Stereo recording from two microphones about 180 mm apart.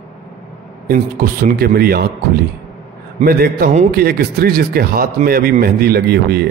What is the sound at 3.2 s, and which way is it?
A man's voice, 55° right (ahead or behind).